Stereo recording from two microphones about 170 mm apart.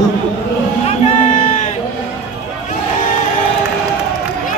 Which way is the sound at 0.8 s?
40° left (ahead or behind).